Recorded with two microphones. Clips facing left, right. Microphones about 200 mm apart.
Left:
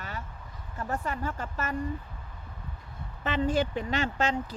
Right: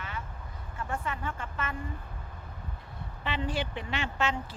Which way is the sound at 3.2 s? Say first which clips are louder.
Left 6 dB; 45° left (ahead or behind).